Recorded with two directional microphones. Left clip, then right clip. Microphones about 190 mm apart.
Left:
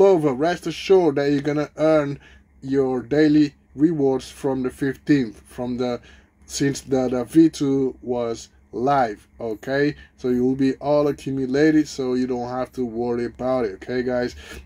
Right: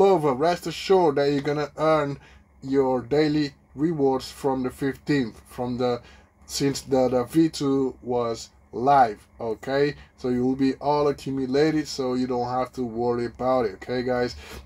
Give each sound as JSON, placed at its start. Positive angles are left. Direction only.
{"t": 0.0, "sound": "speech", "side_deg": 0}